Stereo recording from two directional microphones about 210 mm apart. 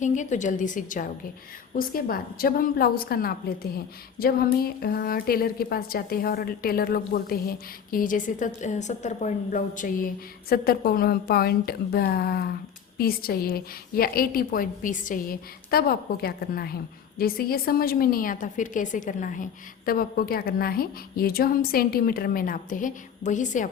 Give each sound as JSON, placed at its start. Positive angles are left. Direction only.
{"t": 0.0, "sound": "a woman's voice", "side_deg": 35}